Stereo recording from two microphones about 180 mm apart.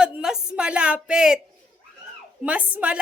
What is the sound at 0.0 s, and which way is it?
A woman's voice, 5° right (ahead or behind).